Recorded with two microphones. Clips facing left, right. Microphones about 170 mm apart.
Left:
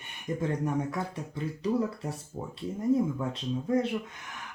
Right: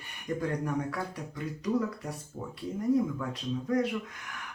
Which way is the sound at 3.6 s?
25° left (ahead or behind).